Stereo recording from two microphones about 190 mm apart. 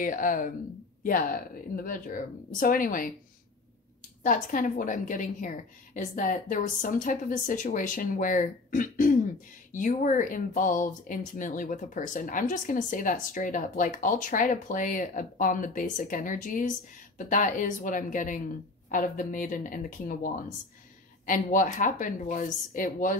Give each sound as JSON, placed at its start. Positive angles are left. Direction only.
{"t": 0.0, "sound": "speech", "side_deg": 45}
{"t": 4.2, "sound": "speech", "side_deg": 45}